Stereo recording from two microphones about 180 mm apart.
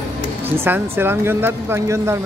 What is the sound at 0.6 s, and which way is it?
Speech, 10° right (ahead or behind).